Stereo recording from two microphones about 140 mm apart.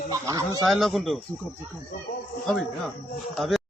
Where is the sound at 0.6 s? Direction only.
Centre (ahead or behind).